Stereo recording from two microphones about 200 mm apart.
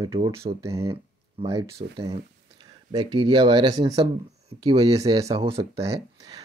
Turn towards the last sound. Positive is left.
turn(degrees=-30)  # may be behind; listen again after turning